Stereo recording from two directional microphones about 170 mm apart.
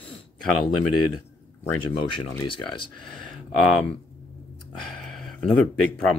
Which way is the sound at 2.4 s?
30° left (ahead or behind).